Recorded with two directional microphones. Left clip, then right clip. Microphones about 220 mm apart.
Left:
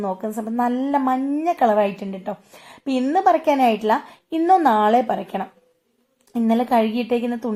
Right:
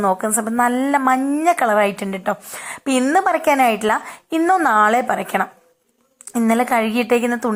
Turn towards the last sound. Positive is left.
turn(degrees=-5)  # may be behind; listen again after turning